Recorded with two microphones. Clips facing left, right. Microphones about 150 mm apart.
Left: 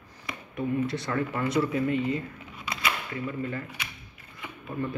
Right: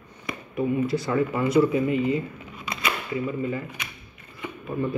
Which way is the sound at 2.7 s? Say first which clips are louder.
Right 3 dB; 20° right (ahead or behind).